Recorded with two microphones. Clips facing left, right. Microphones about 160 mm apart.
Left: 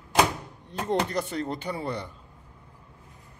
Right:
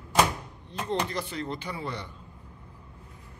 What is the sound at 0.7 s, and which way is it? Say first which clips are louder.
Speech: left 3 dB; 40° left (ahead or behind).